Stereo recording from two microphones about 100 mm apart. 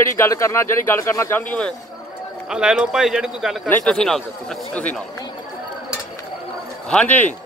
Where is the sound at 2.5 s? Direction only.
10° right (ahead or behind).